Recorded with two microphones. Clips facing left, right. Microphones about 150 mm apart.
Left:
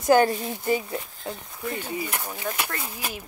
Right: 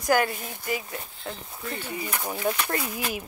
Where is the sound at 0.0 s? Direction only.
25° left (ahead or behind).